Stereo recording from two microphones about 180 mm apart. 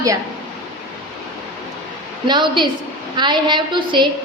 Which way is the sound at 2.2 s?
25° right (ahead or behind).